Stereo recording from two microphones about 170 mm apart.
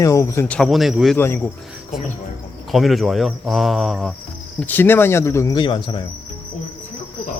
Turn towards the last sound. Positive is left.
turn(degrees=30)  # may be behind; listen again after turning